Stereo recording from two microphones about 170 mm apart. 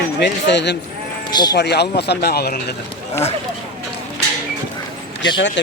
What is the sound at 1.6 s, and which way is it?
A man's voice, 80° left.